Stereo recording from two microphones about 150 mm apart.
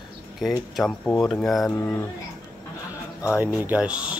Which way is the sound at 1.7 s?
15° left (ahead or behind).